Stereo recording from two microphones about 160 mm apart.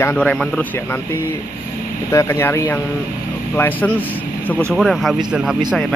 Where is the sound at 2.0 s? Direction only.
15° left (ahead or behind).